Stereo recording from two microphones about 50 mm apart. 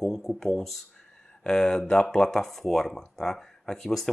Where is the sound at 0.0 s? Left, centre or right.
Centre.